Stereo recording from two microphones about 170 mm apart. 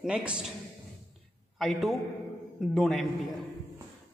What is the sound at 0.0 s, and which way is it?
Speech, 5° right (ahead or behind).